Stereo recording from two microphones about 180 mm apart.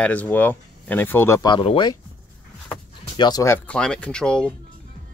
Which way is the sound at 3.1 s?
20° left (ahead or behind).